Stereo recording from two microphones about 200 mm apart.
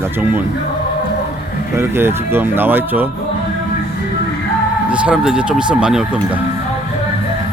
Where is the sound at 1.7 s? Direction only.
10° right (ahead or behind).